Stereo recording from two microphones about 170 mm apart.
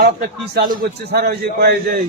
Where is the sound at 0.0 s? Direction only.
60° right (ahead or behind).